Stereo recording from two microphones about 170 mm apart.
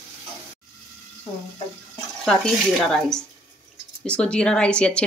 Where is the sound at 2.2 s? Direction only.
5° left (ahead or behind).